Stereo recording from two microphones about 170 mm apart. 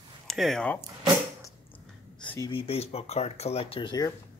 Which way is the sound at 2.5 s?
35° left (ahead or behind).